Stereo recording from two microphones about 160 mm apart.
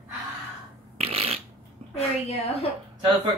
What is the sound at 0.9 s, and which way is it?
Fart, 40° right (ahead or behind).